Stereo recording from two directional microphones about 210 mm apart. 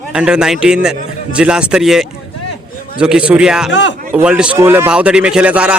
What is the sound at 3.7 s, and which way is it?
Speech, 60° left (ahead or behind).